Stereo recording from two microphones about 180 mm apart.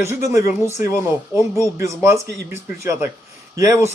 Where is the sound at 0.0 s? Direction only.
15° right (ahead or behind).